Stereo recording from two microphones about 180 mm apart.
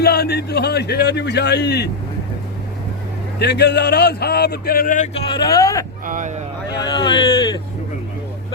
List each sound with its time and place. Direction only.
0.0 s a man's voice: 60° left (ahead or behind)
3.3 s a man's voice: 65° left (ahead or behind); by 5.2 s 45° left (ahead or behind)
5.3 s speech: 20° left (ahead or behind)
6.1 s speech: 45° right (ahead or behind)
6.8 s speech: 25° left (ahead or behind)